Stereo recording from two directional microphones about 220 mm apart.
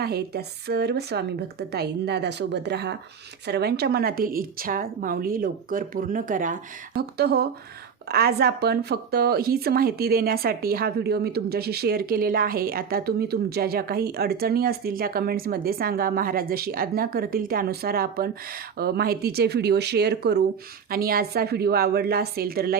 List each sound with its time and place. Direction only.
0.0 s a woman's voice: 45° right (ahead or behind)